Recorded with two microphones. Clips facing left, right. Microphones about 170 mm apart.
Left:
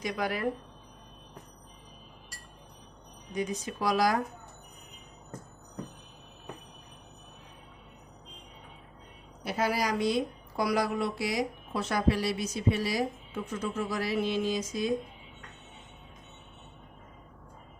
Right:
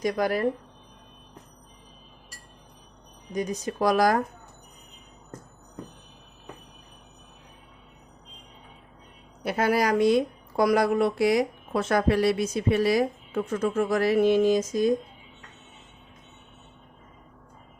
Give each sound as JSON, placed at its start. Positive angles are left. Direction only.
{"t": 0.0, "sound": "speech", "side_deg": -40}
{"t": 3.3, "sound": "speech", "side_deg": -40}
{"t": 9.4, "sound": "speech", "side_deg": -55}